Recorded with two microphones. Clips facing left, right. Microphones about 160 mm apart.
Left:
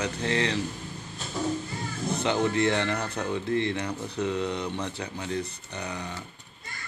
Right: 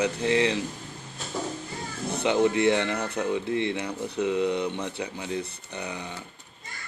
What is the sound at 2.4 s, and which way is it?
Speech, 15° right (ahead or behind).